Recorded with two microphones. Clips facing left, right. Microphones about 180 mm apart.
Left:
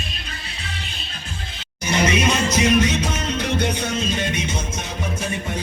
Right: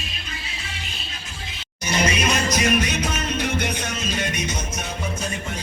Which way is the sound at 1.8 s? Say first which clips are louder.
Left 3 dB; 25° left (ahead or behind).